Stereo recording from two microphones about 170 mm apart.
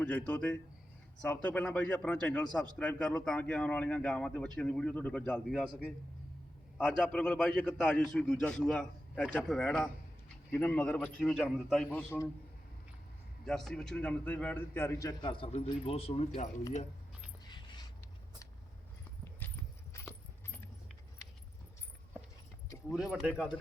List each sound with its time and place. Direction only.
0.0 s a man's voice: 10° left (ahead or behind)
6.7 s a man's voice: 5° left (ahead or behind)
11.9 s a man's voice: 15° left (ahead or behind)
13.4 s a man's voice: centre (ahead or behind); by 16.5 s 35° left (ahead or behind)
17.4 s a sound: 25° left (ahead or behind)
19.4 s horse: 10° left (ahead or behind)
19.9 s keys jangling: 15° left (ahead or behind)
22.9 s a man's voice: 5° right (ahead or behind)